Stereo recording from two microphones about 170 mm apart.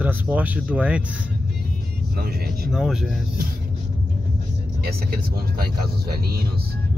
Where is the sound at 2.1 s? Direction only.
65° right (ahead or behind).